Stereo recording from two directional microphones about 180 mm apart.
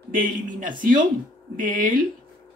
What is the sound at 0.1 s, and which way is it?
Speech, 50° right (ahead or behind).